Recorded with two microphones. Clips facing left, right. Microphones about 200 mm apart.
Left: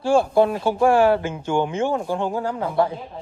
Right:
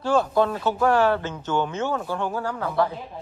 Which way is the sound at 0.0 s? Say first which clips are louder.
Left 4 dB; 10° left (ahead or behind).